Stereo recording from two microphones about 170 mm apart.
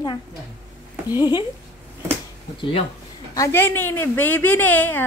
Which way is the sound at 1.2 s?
25° left (ahead or behind).